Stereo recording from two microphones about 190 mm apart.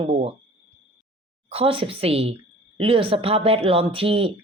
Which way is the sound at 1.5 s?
30° right (ahead or behind).